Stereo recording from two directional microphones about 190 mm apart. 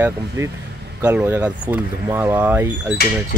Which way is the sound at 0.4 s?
15° right (ahead or behind).